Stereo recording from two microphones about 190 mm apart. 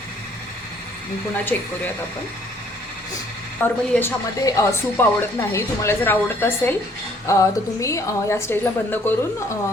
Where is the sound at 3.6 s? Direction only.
10° left (ahead or behind).